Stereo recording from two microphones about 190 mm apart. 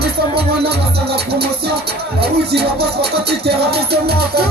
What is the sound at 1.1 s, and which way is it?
Music, 55° right (ahead or behind).